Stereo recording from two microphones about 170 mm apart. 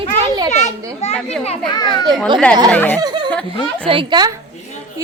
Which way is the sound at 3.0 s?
25° right (ahead or behind).